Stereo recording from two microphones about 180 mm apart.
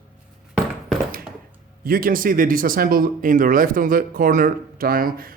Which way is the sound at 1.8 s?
55° right (ahead or behind).